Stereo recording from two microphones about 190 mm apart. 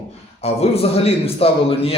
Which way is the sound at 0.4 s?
35° left (ahead or behind).